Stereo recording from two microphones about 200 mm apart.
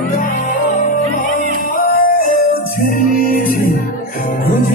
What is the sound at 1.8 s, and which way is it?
Music, 45° left (ahead or behind).